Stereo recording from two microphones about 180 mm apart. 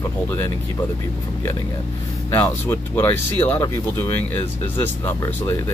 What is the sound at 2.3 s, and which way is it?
Speech, 10° left (ahead or behind).